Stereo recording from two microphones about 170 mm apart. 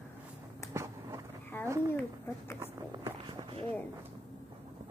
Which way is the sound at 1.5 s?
10° left (ahead or behind).